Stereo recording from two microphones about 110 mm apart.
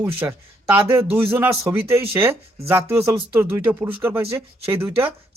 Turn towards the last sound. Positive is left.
turn(degrees=-20)  # may be behind; listen again after turning